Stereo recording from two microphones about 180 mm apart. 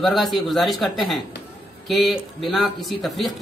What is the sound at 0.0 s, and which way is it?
A man's voice, centre (ahead or behind).